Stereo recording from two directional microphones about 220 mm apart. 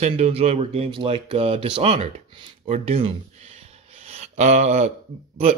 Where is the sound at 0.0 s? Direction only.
30° right (ahead or behind).